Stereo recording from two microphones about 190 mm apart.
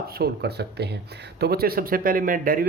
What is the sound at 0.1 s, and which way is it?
Speech, 55° right (ahead or behind).